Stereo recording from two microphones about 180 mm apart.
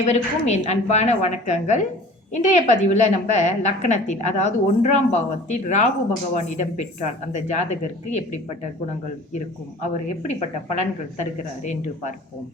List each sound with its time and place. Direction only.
0.0 s a woman's voice: 40° left (ahead or behind)
10.2 s a woman's voice: 40° left (ahead or behind)